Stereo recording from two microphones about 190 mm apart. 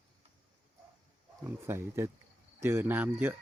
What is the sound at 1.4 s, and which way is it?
Speech, 15° right (ahead or behind).